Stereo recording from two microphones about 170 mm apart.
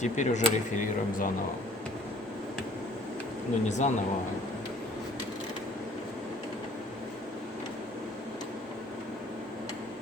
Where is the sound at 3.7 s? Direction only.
45° left (ahead or behind).